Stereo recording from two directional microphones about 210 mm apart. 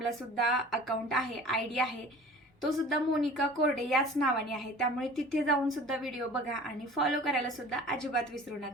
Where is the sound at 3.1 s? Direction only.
Centre (ahead or behind).